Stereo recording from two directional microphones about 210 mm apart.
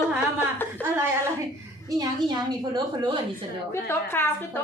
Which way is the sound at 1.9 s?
20° right (ahead or behind).